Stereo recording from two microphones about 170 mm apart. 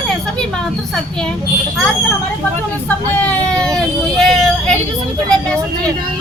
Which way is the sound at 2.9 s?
10° left (ahead or behind).